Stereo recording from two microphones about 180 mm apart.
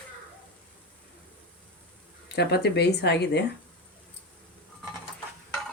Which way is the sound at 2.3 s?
65° left (ahead or behind).